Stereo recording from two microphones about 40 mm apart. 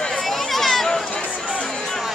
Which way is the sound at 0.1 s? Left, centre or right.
Centre.